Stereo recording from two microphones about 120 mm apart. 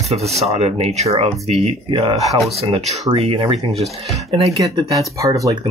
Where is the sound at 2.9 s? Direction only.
60° right (ahead or behind); by 4.5 s 45° right (ahead or behind).